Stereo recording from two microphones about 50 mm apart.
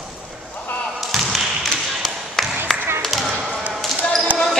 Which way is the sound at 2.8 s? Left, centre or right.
Right.